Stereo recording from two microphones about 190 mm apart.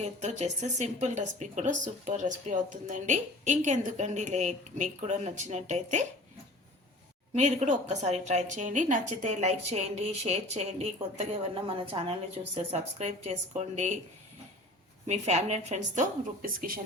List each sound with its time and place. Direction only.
0.0 s speech: 35° right (ahead or behind)
7.3 s speech: 40° right (ahead or behind)
15.0 s speech: 35° right (ahead or behind)